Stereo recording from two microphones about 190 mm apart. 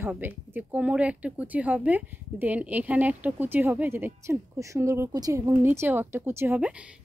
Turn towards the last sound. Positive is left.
turn(degrees=-10)  # may be behind; listen again after turning